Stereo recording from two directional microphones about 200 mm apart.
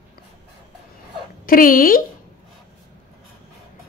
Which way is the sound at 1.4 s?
45° left (ahead or behind).